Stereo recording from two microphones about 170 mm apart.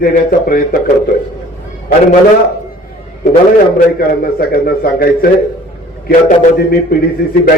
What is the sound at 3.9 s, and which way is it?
A man's voice, 60° left (ahead or behind).